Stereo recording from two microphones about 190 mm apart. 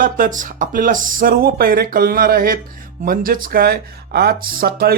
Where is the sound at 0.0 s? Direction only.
45° right (ahead or behind).